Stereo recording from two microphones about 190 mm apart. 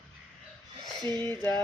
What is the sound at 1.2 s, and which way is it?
Speech, 10° left (ahead or behind).